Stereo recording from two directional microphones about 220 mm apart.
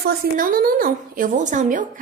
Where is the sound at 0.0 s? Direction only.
40° right (ahead or behind).